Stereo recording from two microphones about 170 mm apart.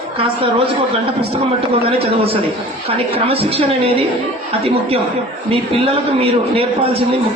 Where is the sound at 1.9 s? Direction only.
35° right (ahead or behind).